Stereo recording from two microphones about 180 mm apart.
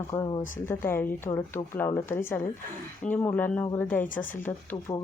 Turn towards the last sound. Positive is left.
turn(degrees=15)  # may be behind; listen again after turning